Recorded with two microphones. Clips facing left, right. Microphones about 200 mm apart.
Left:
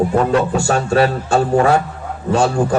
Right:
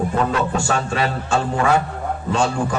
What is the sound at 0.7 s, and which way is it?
Speech, 35° left (ahead or behind).